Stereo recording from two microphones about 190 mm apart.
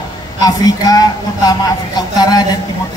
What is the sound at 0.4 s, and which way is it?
Speech, 20° left (ahead or behind).